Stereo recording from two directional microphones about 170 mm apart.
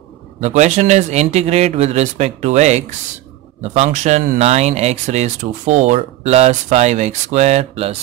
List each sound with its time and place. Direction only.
0.4 s speech: 45° right (ahead or behind)